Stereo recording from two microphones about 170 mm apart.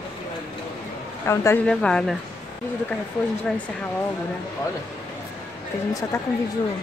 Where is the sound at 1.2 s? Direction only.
15° left (ahead or behind).